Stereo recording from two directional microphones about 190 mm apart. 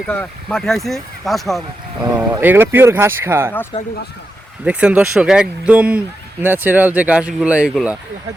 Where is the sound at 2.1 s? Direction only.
15° right (ahead or behind).